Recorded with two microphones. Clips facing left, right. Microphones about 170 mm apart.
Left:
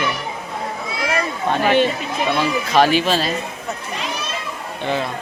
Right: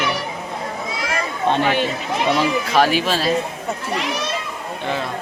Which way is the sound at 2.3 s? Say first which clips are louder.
Even; 15° right (ahead or behind).